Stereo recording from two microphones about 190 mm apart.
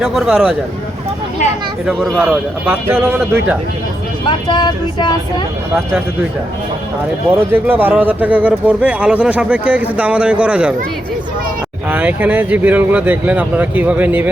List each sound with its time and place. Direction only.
0.0 s speech: 5° right (ahead or behind)
1.9 s speech: 5° right (ahead or behind)
4.3 s vehicle: 25° left (ahead or behind)
7.5 s speech: 10° right (ahead or behind)
11.9 s speech: 10° right (ahead or behind)